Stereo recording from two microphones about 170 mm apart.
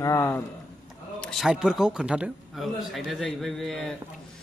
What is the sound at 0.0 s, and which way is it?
Speech, 20° left (ahead or behind).